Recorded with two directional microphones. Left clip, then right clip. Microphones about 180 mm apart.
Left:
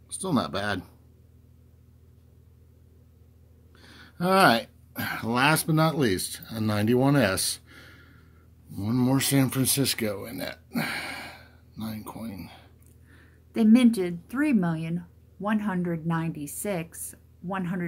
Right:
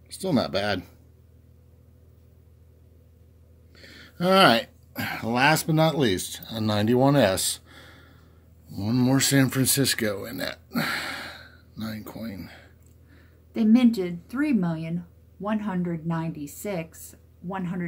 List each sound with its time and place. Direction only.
0.2 s speech: 5° right (ahead or behind)
3.7 s speech: 5° right (ahead or behind)
13.5 s a woman's voice: 35° left (ahead or behind)